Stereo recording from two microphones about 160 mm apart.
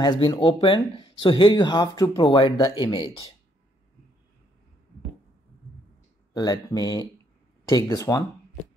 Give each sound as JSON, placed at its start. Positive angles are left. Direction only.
{"t": 0.0, "sound": "speech", "side_deg": 25}
{"t": 6.3, "sound": "speech", "side_deg": 25}